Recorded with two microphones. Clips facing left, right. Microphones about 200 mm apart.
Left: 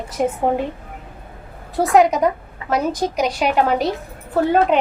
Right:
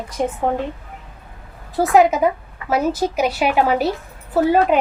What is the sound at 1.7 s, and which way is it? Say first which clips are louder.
A woman's voice: even; centre (ahead or behind).